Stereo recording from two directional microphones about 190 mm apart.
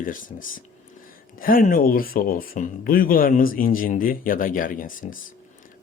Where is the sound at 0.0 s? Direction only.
45° left (ahead or behind).